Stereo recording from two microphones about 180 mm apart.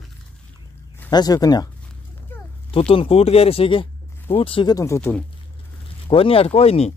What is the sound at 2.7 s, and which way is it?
Speech, 30° left (ahead or behind).